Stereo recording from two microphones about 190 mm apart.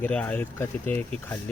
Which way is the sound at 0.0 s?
5° left (ahead or behind).